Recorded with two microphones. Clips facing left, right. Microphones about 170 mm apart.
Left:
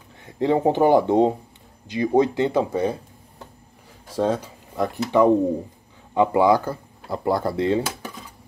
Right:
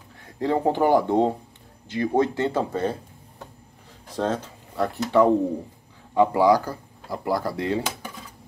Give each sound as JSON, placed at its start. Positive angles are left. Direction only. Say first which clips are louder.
{"t": 0.4, "sound": "speech", "louder": "left 3 dB", "side_deg": 20}
{"t": 4.1, "sound": "speech", "louder": "left 3 dB", "side_deg": 10}